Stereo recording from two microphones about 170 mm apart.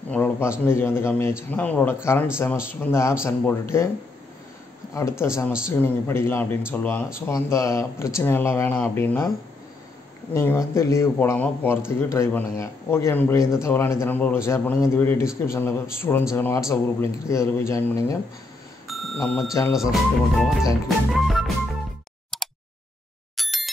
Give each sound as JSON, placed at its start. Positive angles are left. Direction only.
{"t": 0.1, "sound": "a man's voice", "side_deg": 15}
{"t": 5.2, "sound": "a man's voice", "side_deg": 15}
{"t": 10.3, "sound": "a man's voice", "side_deg": 15}
{"t": 18.9, "sound": "a sound", "side_deg": 0}
{"t": 19.1, "sound": "a man's voice", "side_deg": 10}
{"t": 21.1, "sound": "music", "side_deg": 0}
{"t": 22.3, "sound": "a sound", "side_deg": 0}